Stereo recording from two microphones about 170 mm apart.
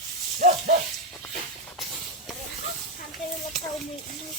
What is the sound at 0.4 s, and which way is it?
Speech, 50° right (ahead or behind).